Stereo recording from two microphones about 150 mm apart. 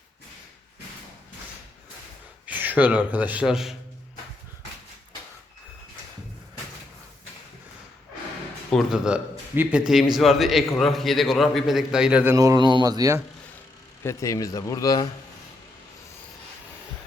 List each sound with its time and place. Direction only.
2.5 s speech: 10° right (ahead or behind)
8.7 s a man's voice: 5° right (ahead or behind)
12.4 s speech: 25° right (ahead or behind)
14.0 s speech: 20° left (ahead or behind)